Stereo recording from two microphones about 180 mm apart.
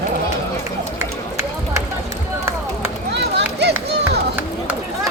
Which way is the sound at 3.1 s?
75° right (ahead or behind).